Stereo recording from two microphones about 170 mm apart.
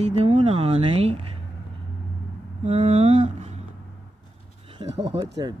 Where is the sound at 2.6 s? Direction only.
40° right (ahead or behind).